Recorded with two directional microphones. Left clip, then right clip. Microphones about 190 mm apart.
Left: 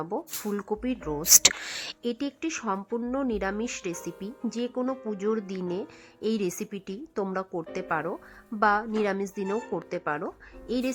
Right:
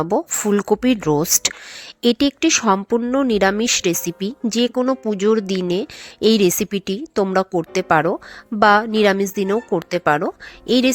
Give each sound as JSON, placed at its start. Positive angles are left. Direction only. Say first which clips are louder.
{"t": 0.0, "sound": "speech", "louder": "right 13 dB", "side_deg": -30}
{"t": 1.2, "sound": "speech", "louder": "right 1 dB", "side_deg": 0}
{"t": 2.0, "sound": "speech", "louder": "right 18 dB", "side_deg": -30}